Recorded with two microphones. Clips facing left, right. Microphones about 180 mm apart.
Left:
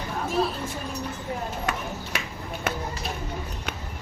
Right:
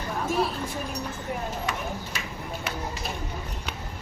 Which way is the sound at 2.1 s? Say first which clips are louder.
Left 3 dB; 60° left (ahead or behind).